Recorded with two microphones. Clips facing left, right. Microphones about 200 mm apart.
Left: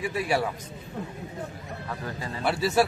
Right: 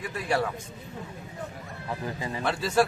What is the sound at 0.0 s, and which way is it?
Speech, 10° left (ahead or behind).